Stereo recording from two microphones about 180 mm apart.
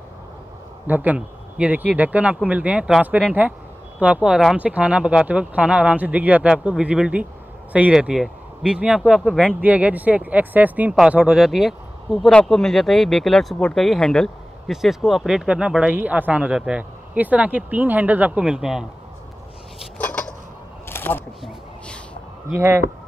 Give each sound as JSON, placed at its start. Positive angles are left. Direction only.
{"t": 0.8, "sound": "speech", "side_deg": -10}
{"t": 20.0, "sound": "a sound", "side_deg": 10}
{"t": 22.5, "sound": "speech", "side_deg": -15}